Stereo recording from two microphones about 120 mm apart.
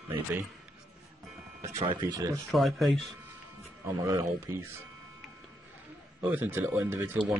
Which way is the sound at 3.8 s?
25° right (ahead or behind).